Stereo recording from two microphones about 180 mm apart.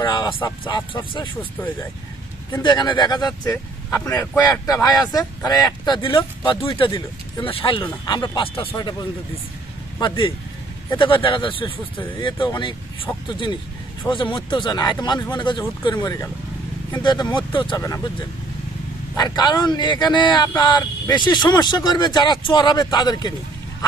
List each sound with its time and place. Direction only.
0.0 s a sound: 25° left (ahead or behind)
0.7 s speech: 25° left (ahead or behind)
2.6 s speech: 25° left (ahead or behind)
9.9 s speech: 25° left (ahead or behind)
19.1 s speech: 25° left (ahead or behind)